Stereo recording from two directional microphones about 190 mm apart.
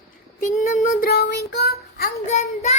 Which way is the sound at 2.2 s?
35° left (ahead or behind).